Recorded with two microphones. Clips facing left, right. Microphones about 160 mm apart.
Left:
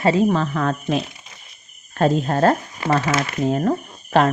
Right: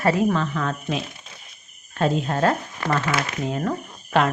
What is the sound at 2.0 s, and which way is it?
Speech, 40° left (ahead or behind).